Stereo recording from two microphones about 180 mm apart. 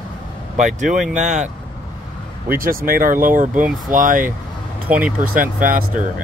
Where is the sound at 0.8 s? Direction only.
45° right (ahead or behind).